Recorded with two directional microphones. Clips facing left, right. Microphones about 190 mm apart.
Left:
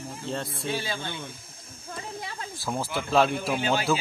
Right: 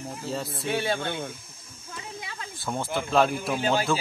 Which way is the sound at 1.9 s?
45° left (ahead or behind).